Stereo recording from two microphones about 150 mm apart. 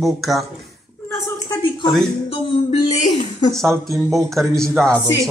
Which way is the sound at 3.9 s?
20° right (ahead or behind).